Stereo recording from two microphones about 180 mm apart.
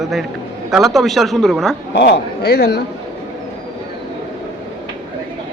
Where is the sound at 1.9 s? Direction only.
65° left (ahead or behind).